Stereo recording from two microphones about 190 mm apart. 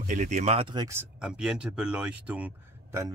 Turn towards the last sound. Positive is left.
turn(degrees=-10)  # may be behind; listen again after turning